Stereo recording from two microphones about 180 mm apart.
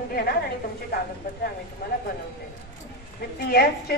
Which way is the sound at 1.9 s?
50° left (ahead or behind).